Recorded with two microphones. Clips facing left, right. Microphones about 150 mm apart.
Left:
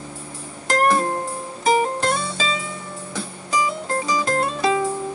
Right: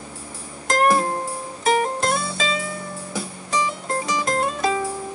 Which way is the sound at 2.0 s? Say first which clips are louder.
Left 1 dB; 10° right (ahead or behind).